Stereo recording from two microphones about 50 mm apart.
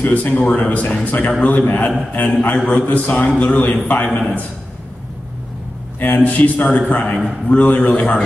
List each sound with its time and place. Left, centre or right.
0.0 s a man's voice: left
5.9 s a man's voice: left